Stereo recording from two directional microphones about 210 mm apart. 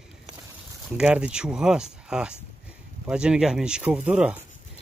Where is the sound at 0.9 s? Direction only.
5° right (ahead or behind).